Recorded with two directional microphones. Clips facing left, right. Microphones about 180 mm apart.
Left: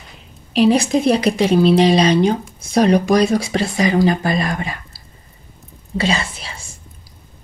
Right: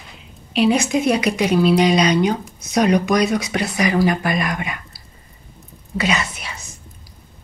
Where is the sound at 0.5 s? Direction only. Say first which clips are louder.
Left 3 dB; 35° left (ahead or behind).